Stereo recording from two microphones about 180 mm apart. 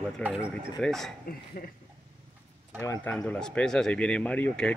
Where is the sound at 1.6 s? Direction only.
50° left (ahead or behind).